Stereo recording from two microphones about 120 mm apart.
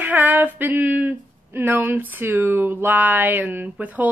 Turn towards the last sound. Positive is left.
turn(degrees=-15)  # may be behind; listen again after turning